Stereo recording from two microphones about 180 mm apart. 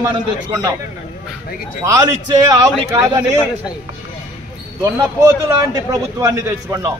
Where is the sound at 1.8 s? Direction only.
20° right (ahead or behind).